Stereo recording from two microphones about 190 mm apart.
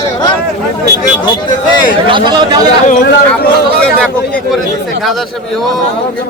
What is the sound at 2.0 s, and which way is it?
Speech, 25° right (ahead or behind).